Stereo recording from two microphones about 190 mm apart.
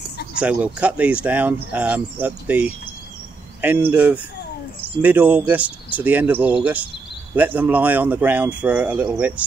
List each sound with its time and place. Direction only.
0.4 s speech: 5° right (ahead or behind)